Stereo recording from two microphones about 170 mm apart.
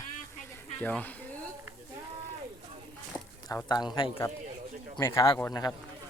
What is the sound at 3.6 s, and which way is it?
Speech, 25° left (ahead or behind).